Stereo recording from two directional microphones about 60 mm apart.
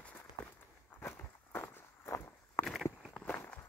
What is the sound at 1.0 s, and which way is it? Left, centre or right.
Walk, left.